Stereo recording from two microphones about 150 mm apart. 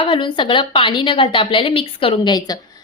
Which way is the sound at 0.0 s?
35° left (ahead or behind).